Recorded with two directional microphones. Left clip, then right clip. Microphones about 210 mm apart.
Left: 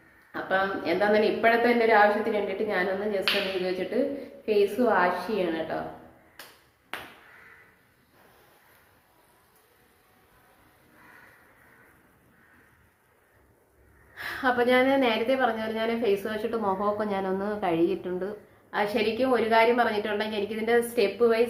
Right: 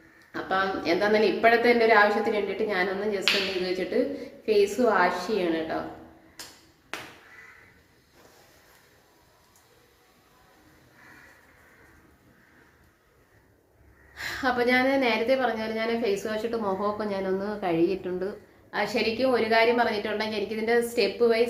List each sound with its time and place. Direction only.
0.3 s a woman's voice: 5° left (ahead or behind)
6.9 s a sound: 5° left (ahead or behind)
14.2 s a woman's voice: centre (ahead or behind)